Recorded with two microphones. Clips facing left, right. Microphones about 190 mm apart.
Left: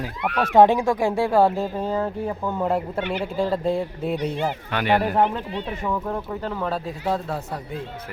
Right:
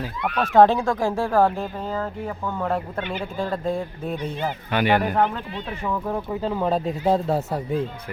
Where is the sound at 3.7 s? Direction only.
5° left (ahead or behind).